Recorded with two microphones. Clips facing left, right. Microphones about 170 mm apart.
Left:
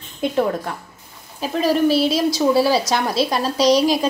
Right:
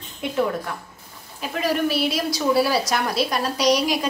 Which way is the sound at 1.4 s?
30° left (ahead or behind).